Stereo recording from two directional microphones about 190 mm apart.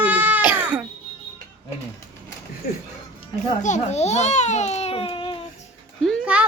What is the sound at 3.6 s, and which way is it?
A child's voice, 40° left (ahead or behind).